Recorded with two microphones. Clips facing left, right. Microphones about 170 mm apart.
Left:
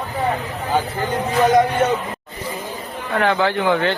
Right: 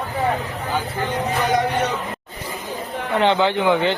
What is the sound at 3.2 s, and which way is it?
Speech, 20° right (ahead or behind).